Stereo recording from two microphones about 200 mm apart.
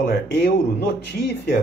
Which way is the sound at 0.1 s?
55° left (ahead or behind).